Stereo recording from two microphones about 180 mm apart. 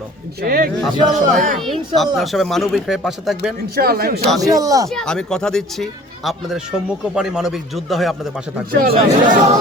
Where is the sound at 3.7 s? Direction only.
60° right (ahead or behind).